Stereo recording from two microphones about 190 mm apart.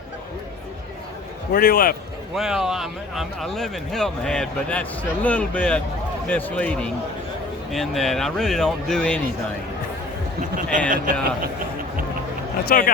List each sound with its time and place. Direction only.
1.5 s a man's voice: 50° left (ahead or behind)
2.3 s a man's voice: centre (ahead or behind)
10.8 s speech: 45° right (ahead or behind)
12.6 s a man's voice: 50° left (ahead or behind)